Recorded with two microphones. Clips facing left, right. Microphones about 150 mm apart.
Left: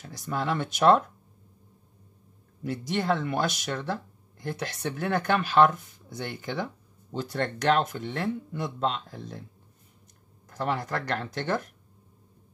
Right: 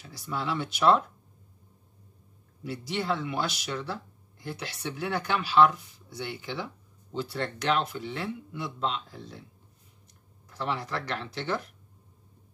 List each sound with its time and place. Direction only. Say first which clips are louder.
0.0 s speech: left 3 dB; 45° left (ahead or behind)
2.6 s speech: left 3 dB; 50° left (ahead or behind)
10.5 s speech: left 3 dB; 45° left (ahead or behind)